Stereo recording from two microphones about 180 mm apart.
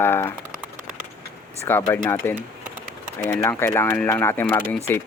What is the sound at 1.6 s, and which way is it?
Speech, 10° left (ahead or behind).